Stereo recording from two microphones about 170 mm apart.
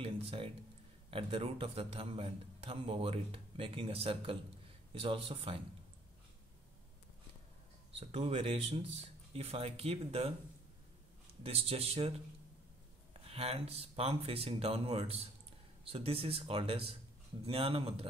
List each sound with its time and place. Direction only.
0.0 s a sound: 35° right (ahead or behind)
1.1 s a man's voice: 35° right (ahead or behind)
7.9 s a man's voice: 35° right (ahead or behind)
11.4 s a man's voice: 35° right (ahead or behind)
13.3 s a man's voice: 35° right (ahead or behind)